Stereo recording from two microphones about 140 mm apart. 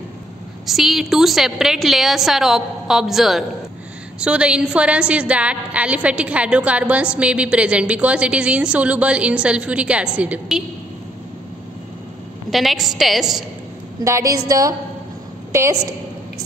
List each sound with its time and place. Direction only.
0.7 s a woman's voice: centre (ahead or behind)
12.4 s a woman's voice: centre (ahead or behind)
14.0 s a woman's voice: 20° right (ahead or behind)